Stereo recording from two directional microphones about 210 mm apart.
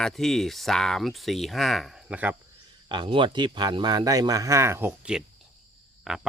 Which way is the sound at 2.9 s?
25° right (ahead or behind).